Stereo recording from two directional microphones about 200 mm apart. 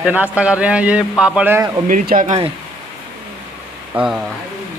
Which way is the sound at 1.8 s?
45° right (ahead or behind).